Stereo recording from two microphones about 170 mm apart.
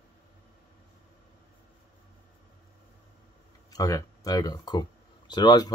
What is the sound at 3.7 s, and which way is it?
Speech, 20° left (ahead or behind).